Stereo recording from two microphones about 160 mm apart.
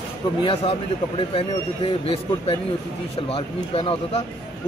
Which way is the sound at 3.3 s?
35° left (ahead or behind).